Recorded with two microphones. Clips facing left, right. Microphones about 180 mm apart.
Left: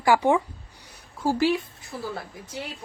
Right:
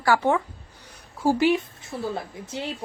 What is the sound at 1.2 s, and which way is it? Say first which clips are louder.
A woman's voice: right 2 dB; 15° right (ahead or behind).